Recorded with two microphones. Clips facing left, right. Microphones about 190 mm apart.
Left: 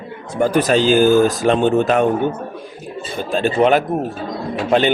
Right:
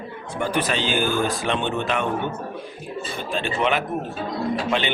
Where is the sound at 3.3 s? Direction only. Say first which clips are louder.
Left 9 dB; 40° left (ahead or behind).